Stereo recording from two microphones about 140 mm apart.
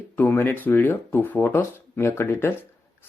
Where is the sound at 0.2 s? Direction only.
15° left (ahead or behind).